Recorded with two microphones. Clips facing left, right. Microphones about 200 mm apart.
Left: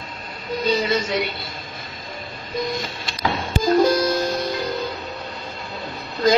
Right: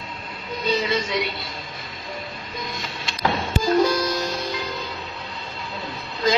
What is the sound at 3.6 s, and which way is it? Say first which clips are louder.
Music: left 3 dB; 45° left (ahead or behind).